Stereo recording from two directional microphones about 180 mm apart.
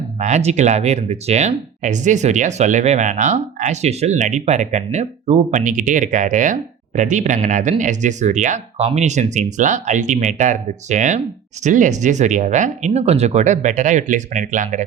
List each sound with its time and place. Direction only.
0.2 s speech: 40° right (ahead or behind)